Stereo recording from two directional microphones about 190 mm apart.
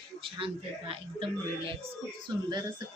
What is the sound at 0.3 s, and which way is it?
Speech, 30° right (ahead or behind).